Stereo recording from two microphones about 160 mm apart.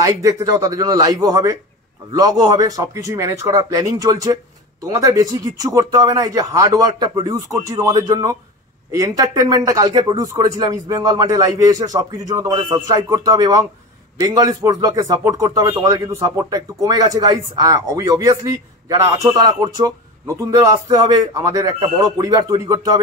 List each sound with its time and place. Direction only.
0.0 s speech: 20° right (ahead or behind)